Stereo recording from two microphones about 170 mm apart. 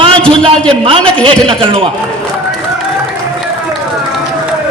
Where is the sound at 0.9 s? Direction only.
30° right (ahead or behind).